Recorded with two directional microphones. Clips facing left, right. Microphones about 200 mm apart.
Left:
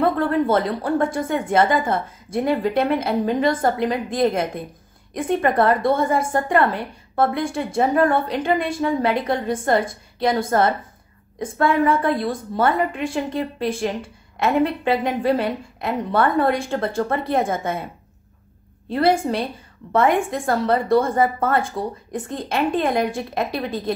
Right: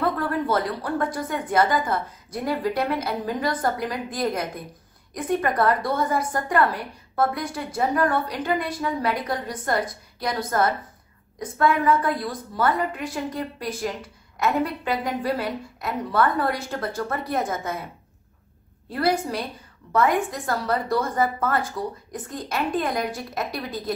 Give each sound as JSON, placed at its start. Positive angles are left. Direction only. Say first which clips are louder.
{"t": 0.0, "sound": "a woman's voice", "louder": "left 6 dB", "side_deg": 25}
{"t": 18.9, "sound": "a woman's voice", "louder": "left 5 dB", "side_deg": 25}